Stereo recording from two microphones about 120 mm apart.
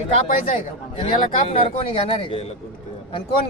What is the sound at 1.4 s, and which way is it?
Speech, 55° left (ahead or behind).